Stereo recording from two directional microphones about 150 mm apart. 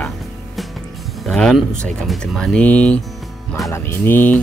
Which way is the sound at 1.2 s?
Centre (ahead or behind).